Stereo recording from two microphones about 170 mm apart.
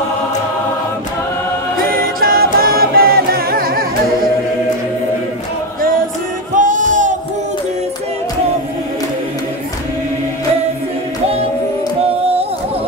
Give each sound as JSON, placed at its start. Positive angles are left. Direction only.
{"t": 2.0, "sound": "a capella", "side_deg": -60}
{"t": 6.5, "sound": "music", "side_deg": -50}